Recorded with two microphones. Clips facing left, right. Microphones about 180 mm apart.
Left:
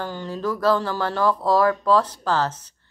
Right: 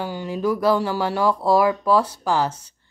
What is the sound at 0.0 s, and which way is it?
Speech, 10° right (ahead or behind).